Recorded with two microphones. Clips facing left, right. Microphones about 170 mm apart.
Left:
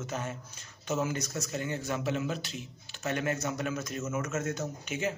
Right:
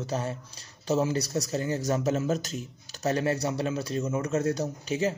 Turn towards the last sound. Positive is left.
turn(degrees=-35)  # may be behind; listen again after turning